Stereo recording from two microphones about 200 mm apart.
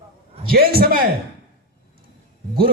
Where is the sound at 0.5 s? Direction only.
50° right (ahead or behind).